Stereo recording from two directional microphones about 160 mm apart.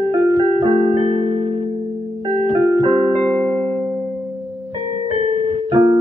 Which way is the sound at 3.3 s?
5° left (ahead or behind).